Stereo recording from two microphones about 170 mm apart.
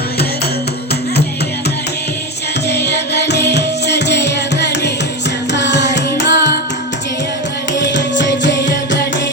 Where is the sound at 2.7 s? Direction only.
80° left.